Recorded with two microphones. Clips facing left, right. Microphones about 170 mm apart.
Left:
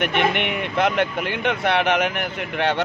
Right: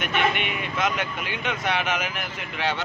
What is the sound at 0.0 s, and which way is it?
Speech, 65° left (ahead or behind).